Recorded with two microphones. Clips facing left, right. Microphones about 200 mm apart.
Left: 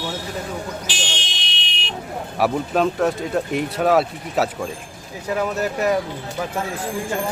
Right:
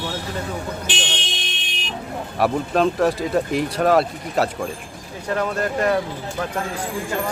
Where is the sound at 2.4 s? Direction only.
Centre (ahead or behind).